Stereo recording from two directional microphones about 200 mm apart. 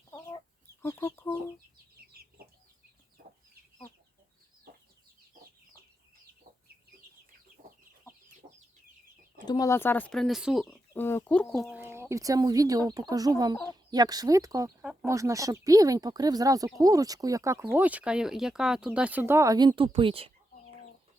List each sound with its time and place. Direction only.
0.1 s chicken: 15° left (ahead or behind)
8.4 s chicken: 45° right (ahead or behind)
9.5 s speech: 15° left (ahead or behind); by 10.8 s centre (ahead or behind)
10.9 s speech: 10° left (ahead or behind)
11.8 s speech: 10° right (ahead or behind)